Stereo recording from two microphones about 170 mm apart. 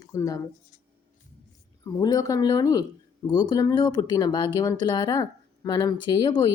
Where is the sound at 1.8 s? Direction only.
20° left (ahead or behind).